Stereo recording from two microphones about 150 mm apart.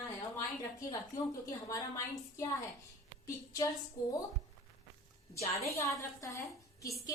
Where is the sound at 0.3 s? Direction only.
20° left (ahead or behind).